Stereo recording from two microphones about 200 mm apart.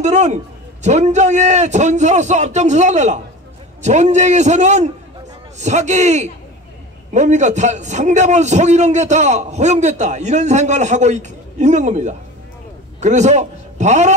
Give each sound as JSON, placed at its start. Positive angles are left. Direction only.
{"t": 0.0, "sound": "a man's voice", "side_deg": -35}